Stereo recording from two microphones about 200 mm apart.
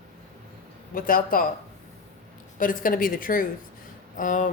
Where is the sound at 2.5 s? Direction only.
45° left (ahead or behind).